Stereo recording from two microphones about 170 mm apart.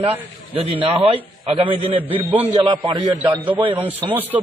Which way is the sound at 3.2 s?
10° right (ahead or behind).